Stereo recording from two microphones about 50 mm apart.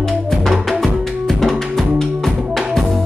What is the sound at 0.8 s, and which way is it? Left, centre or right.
Music, centre.